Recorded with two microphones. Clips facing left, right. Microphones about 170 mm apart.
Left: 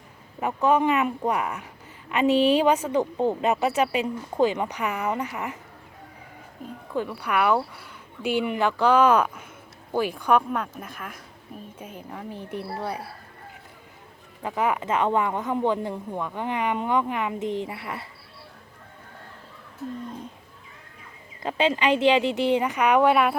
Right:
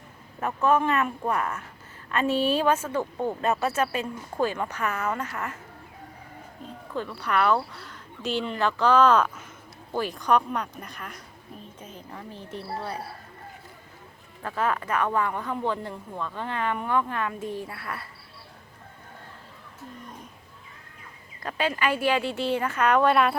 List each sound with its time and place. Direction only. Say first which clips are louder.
0.3 s speech: left 2 dB; 15° left (ahead or behind)
6.9 s a woman's voice: left 1 dB; 15° left (ahead or behind)
14.4 s speech: left 2 dB; 15° left (ahead or behind)
21.4 s speech: left 4 dB; 20° left (ahead or behind)